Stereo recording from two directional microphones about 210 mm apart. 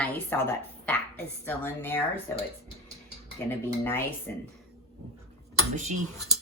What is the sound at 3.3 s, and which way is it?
Speech, 10° left (ahead or behind).